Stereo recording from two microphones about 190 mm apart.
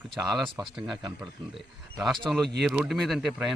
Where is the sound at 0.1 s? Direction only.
Centre (ahead or behind).